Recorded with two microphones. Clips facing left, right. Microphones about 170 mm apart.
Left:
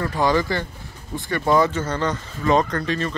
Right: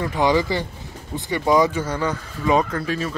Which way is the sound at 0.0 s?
20° right (ahead or behind).